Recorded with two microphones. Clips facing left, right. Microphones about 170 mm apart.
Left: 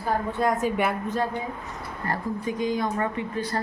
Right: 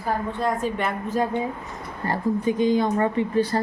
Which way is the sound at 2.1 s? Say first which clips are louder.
Right 6 dB; 25° right (ahead or behind).